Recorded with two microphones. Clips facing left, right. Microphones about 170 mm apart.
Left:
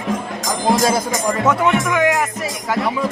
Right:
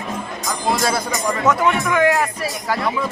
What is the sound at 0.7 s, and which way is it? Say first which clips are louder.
Speech: left 4 dB; 45° left (ahead or behind).